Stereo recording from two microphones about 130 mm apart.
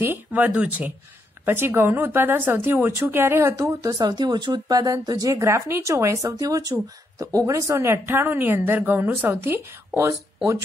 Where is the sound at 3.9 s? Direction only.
35° right (ahead or behind).